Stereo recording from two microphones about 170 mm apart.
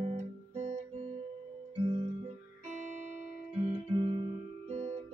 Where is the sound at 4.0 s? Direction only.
30° right (ahead or behind).